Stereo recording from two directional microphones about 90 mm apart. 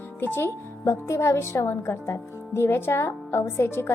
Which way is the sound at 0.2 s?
25° left (ahead or behind).